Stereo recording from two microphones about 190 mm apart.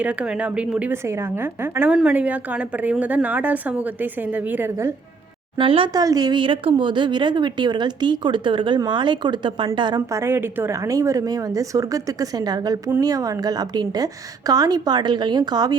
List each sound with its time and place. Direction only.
0.0 s a woman's voice: 5° right (ahead or behind)
5.5 s speech: 30° right (ahead or behind)